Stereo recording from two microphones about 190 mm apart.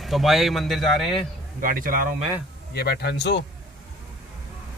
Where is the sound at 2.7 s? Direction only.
55° left (ahead or behind).